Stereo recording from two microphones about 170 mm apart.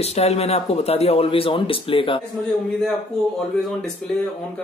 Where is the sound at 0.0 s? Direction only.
40° left (ahead or behind).